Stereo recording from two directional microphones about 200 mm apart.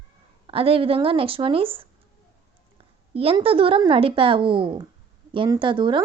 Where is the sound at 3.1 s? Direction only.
30° right (ahead or behind).